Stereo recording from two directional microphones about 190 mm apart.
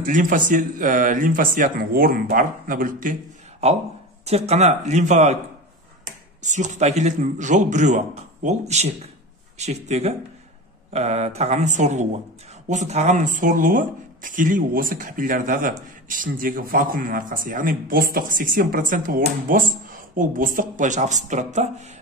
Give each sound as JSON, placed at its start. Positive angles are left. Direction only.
{"t": 0.0, "sound": "speech", "side_deg": -45}
{"t": 3.6, "sound": "a man's voice", "side_deg": -35}
{"t": 6.4, "sound": "a man's voice", "side_deg": -40}